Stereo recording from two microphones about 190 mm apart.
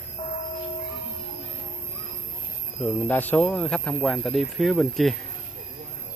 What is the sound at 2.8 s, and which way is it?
Speech, 5° left (ahead or behind).